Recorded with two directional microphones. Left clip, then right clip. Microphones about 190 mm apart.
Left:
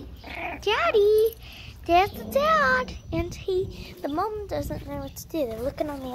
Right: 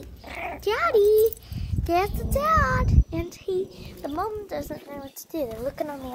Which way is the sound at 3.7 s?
30° left (ahead or behind).